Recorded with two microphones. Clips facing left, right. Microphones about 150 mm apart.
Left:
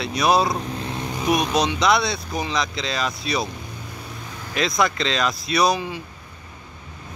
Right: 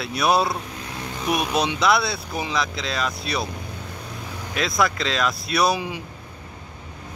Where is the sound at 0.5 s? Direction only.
25° left (ahead or behind).